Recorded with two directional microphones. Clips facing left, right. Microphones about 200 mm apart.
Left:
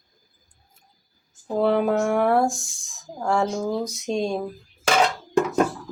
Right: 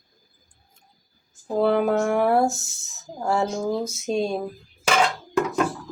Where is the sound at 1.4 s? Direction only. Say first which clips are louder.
Even; centre (ahead or behind).